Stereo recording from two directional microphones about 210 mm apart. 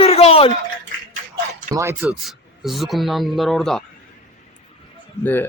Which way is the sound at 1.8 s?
15° right (ahead or behind).